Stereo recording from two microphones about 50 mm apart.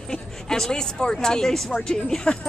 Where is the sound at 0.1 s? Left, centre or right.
Centre.